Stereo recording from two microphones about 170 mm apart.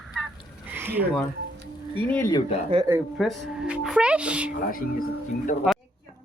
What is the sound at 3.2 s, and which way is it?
Speech, centre (ahead or behind).